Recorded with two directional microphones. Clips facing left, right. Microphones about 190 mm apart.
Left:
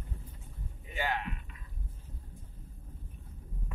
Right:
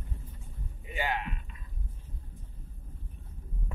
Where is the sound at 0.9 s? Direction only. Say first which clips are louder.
Right 1 dB; 15° right (ahead or behind).